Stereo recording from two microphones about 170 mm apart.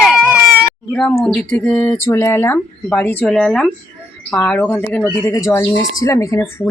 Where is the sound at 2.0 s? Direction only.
15° left (ahead or behind).